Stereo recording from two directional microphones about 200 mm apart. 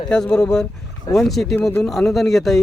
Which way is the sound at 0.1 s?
5° left (ahead or behind).